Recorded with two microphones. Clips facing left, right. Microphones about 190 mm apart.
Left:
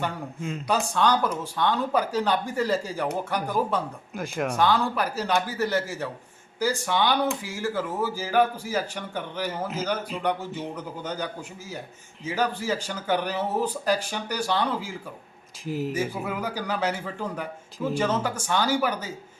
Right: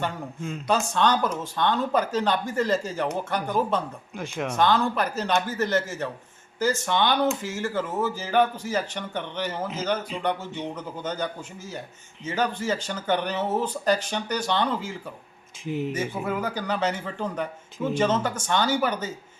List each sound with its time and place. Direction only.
0.0 s speech: centre (ahead or behind)
0.7 s speech: 10° left (ahead or behind)